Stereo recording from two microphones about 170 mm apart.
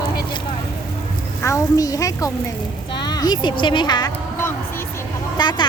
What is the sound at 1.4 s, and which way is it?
Speech, 20° left (ahead or behind).